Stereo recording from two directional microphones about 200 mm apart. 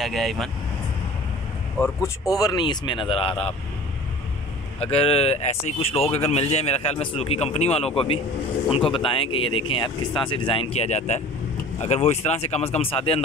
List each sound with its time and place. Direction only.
0.0 s speech: centre (ahead or behind)
2.0 s speech: 15° left (ahead or behind)
4.7 s speech: 30° left (ahead or behind)